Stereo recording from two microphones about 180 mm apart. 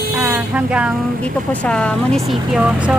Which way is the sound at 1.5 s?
5° left (ahead or behind).